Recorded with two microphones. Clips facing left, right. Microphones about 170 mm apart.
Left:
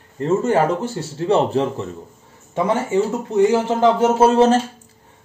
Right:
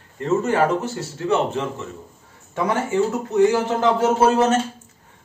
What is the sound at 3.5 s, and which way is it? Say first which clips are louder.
Speech: left 3 dB; 25° left (ahead or behind).